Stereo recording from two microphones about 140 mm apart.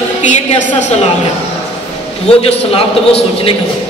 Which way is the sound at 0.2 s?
55° left (ahead or behind).